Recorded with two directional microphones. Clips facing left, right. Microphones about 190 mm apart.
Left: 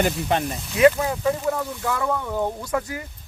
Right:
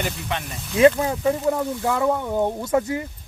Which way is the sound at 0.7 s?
25° right (ahead or behind).